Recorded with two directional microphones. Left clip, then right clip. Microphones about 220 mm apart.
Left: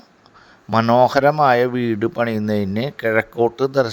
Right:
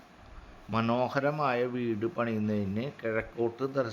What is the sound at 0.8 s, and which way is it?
Speech, 25° left (ahead or behind).